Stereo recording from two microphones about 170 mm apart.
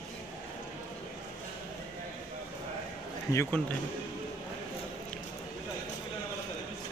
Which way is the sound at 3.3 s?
15° left (ahead or behind).